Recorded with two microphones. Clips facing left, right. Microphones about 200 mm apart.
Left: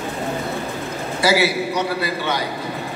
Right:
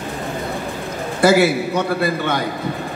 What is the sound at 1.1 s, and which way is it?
A man's voice, 50° right (ahead or behind).